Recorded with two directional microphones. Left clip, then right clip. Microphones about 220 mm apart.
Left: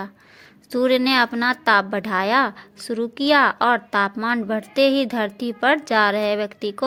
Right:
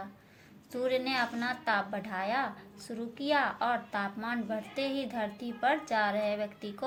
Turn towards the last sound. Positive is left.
turn(degrees=50)  # may be behind; listen again after turning